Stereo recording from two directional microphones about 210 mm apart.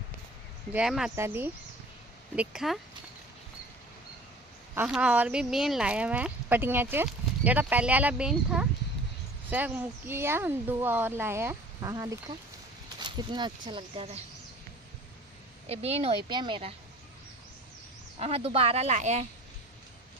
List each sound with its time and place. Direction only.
0.7 s speech: 5° right (ahead or behind)
4.7 s speech: 5° right (ahead or behind); by 14.2 s 25° right (ahead or behind)
15.7 s speech: 30° right (ahead or behind)
18.2 s speech: 25° right (ahead or behind)